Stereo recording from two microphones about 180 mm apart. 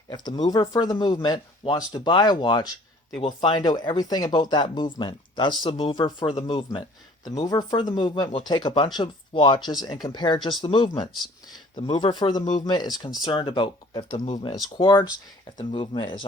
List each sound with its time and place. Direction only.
0.1 s speech: 25° left (ahead or behind)
14.3 s speech: 40° left (ahead or behind)
14.8 s speech: 25° left (ahead or behind)